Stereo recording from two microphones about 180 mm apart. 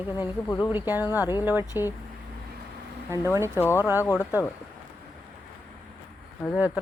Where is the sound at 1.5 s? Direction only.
10° right (ahead or behind).